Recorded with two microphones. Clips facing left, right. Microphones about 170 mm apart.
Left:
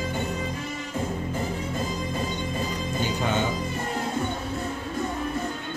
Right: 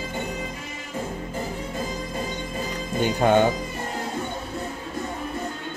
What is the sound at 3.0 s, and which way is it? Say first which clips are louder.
Music: right 8 dB; 55° right (ahead or behind).